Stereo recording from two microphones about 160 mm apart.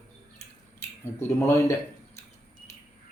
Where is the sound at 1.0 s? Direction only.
15° left (ahead or behind).